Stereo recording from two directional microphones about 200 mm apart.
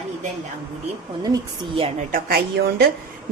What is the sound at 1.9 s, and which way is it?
Speech, 50° right (ahead or behind).